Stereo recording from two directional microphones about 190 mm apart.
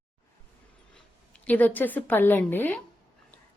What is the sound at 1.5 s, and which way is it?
Speech, 10° left (ahead or behind).